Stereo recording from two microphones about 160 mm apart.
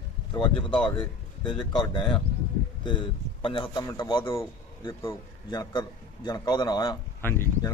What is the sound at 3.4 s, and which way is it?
A man's voice, 30° left (ahead or behind).